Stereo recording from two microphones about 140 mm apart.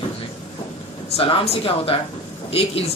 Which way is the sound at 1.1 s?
45° left (ahead or behind).